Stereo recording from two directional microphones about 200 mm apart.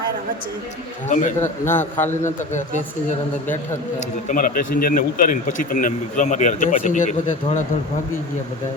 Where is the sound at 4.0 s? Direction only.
40° left (ahead or behind).